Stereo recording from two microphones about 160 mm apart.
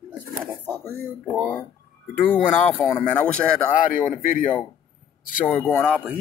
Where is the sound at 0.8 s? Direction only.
20° right (ahead or behind).